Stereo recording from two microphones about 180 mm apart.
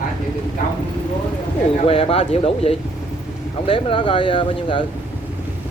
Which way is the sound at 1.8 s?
30° left (ahead or behind).